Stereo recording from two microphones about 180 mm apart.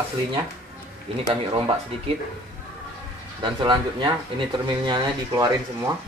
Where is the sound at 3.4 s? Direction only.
25° right (ahead or behind).